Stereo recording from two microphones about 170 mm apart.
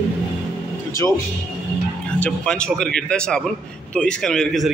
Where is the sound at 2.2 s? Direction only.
5° left (ahead or behind).